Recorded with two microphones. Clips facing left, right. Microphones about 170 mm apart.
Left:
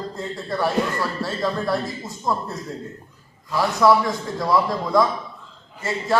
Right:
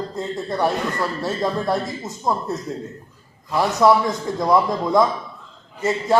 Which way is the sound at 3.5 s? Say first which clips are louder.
Right 1 dB; 20° right (ahead or behind).